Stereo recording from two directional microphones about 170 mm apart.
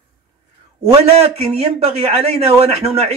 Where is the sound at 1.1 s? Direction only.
40° right (ahead or behind).